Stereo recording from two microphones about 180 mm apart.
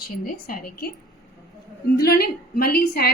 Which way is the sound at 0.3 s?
50° left (ahead or behind).